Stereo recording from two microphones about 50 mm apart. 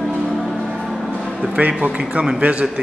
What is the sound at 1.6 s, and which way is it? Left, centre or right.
A man's voice, right.